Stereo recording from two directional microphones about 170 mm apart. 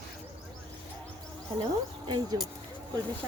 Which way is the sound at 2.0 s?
25° right (ahead or behind).